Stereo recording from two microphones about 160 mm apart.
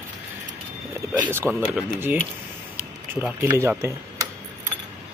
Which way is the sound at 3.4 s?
15° right (ahead or behind).